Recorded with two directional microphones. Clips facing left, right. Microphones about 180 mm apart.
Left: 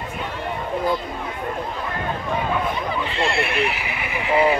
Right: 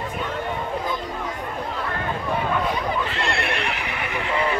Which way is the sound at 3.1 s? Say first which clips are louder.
Left 3 dB; centre (ahead or behind).